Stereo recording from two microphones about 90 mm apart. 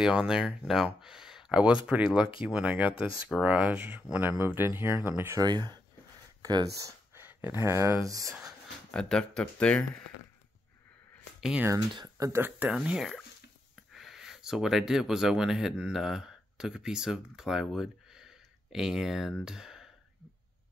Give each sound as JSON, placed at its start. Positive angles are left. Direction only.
{"t": 0.0, "sound": "speech", "side_deg": -10}
{"t": 5.4, "sound": "speech", "side_deg": -50}
{"t": 7.2, "sound": "speech", "side_deg": -25}
{"t": 8.3, "sound": "speech", "side_deg": -5}
{"t": 8.9, "sound": "speech", "side_deg": 10}
{"t": 12.3, "sound": "speech", "side_deg": -25}
{"t": 12.6, "sound": "speech", "side_deg": -10}